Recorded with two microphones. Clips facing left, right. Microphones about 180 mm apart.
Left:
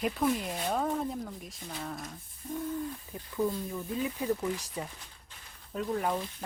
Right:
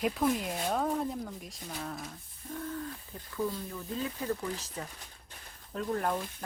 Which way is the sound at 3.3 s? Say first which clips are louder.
Left 3 dB; 10° left (ahead or behind).